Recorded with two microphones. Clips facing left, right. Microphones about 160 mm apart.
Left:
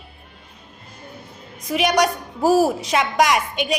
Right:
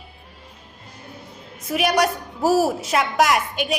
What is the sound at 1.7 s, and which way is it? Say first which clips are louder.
A woman's voice: left 1 dB; 5° right (ahead or behind).